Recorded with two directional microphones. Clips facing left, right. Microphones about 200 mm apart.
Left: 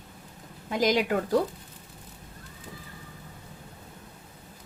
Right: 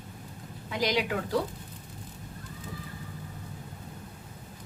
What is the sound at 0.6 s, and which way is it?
Speech, 45° left (ahead or behind).